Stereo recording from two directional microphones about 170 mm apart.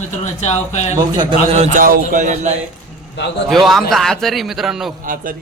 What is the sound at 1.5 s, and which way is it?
A man's voice, 40° right (ahead or behind).